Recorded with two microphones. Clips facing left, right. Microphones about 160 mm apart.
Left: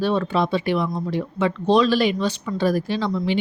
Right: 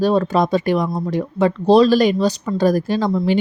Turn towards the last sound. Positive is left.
turn(degrees=-45)  # may be behind; listen again after turning